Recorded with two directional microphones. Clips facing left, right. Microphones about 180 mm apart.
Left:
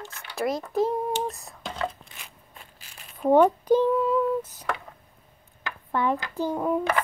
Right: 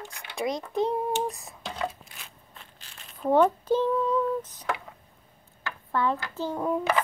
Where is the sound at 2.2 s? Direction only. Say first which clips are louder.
Left 1 dB; 10° left (ahead or behind).